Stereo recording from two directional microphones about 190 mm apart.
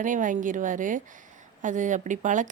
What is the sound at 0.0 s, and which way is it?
A woman's voice, 45° right (ahead or behind).